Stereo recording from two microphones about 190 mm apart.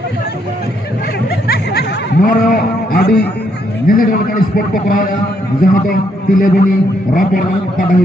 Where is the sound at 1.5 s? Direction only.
55° left (ahead or behind).